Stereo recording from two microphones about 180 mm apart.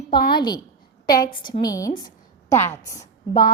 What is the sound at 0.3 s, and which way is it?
A woman's voice, 25° left (ahead or behind).